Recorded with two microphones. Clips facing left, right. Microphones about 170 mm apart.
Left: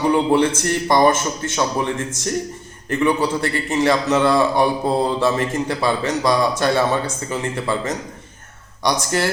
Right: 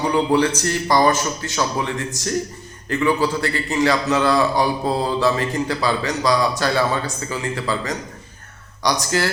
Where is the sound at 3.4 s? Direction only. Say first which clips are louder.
Left 1 dB; 25° left (ahead or behind).